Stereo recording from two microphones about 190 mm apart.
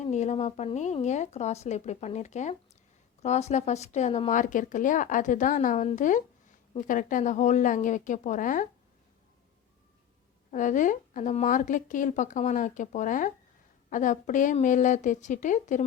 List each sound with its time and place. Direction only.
0.0 s speech: 35° left (ahead or behind)
10.5 s speech: 40° left (ahead or behind)